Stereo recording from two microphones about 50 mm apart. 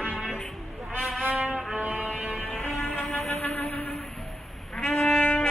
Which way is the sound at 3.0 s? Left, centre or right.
Centre.